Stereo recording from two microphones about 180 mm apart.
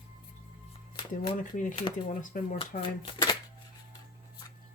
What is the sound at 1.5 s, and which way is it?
Speech, 45° left (ahead or behind).